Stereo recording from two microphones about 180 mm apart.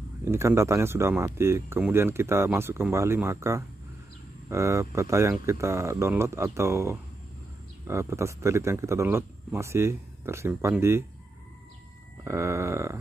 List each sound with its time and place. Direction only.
0.2 s speech: 15° right (ahead or behind)
12.3 s speech: 15° right (ahead or behind)